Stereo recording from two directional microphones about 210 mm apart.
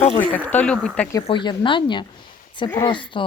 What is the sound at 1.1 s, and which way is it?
Speech, 20° left (ahead or behind).